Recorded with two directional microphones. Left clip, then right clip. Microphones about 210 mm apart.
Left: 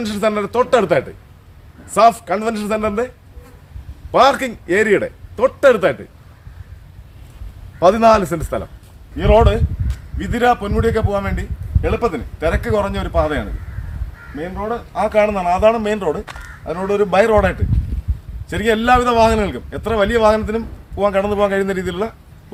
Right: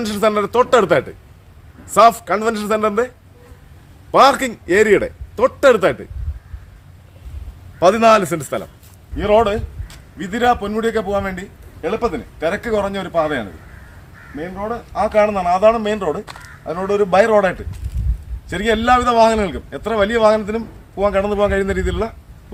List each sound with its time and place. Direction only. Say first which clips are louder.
0.0 s a man's voice: right 2 dB; 35° right (ahead or behind)
4.1 s speech: right 1 dB; 35° right (ahead or behind)
7.8 s a man's voice: even; 10° right (ahead or behind)